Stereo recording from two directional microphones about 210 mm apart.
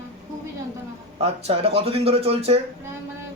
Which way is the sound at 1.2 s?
30° right (ahead or behind).